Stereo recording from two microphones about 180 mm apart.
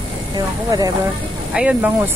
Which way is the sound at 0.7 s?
20° right (ahead or behind).